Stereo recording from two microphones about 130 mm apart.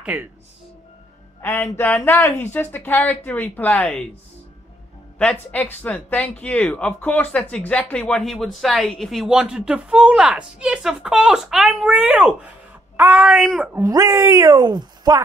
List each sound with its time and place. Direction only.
0.0 s speech: 15° right (ahead or behind)
1.4 s speech: 15° left (ahead or behind)
5.2 s speech: 10° left (ahead or behind)
13.7 s speech: 25° right (ahead or behind)